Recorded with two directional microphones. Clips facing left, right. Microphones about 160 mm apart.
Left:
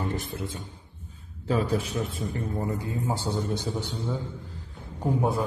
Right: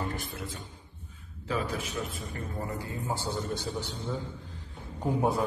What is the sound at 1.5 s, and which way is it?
Speech, 35° left (ahead or behind).